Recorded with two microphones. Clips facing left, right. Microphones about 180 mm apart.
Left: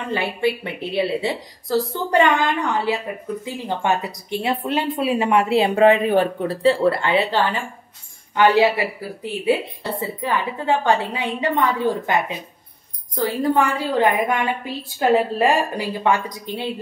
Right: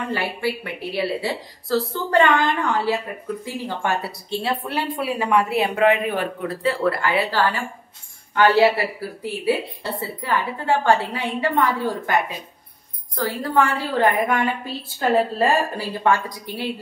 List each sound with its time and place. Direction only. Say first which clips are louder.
0.1 s a woman's voice: left 6 dB; 20° left (ahead or behind)